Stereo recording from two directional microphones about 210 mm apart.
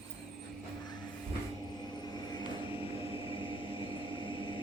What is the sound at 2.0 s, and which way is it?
Vehicle, 20° left (ahead or behind).